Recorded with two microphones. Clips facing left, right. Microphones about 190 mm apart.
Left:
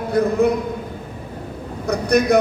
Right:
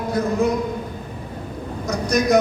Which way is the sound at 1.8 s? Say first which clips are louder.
Left 3 dB; 60° left (ahead or behind).